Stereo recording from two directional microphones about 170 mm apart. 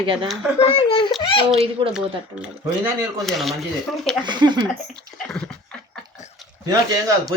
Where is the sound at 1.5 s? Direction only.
35° right (ahead or behind).